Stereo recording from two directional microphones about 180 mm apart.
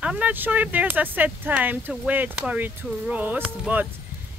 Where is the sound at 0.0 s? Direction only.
5° right (ahead or behind).